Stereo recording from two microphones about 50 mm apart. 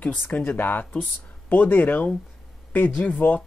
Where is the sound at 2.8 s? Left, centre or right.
Left.